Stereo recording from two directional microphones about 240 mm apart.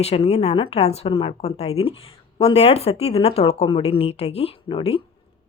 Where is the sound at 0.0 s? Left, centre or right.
Left.